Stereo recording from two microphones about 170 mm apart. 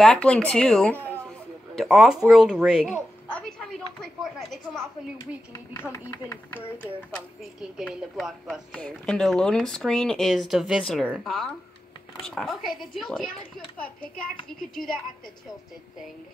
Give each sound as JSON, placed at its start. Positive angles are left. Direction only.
{"t": 0.0, "sound": "a woman's voice", "side_deg": 5}
{"t": 3.3, "sound": "a sound", "side_deg": 5}
{"t": 5.2, "sound": "speech", "side_deg": 20}
{"t": 7.7, "sound": "a woman's voice", "side_deg": 0}